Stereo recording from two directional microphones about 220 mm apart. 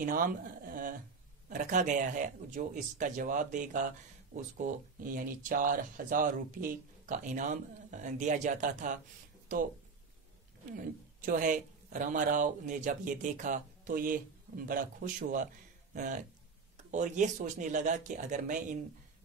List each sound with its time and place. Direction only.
0.0 s a sound: 40° right (ahead or behind)
1.5 s speech: 35° right (ahead or behind)
10.8 s speech: 40° right (ahead or behind)